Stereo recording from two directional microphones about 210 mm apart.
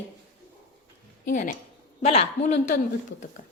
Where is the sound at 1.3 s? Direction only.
40° left (ahead or behind).